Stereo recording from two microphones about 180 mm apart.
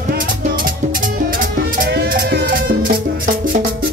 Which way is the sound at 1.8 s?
65° right (ahead or behind).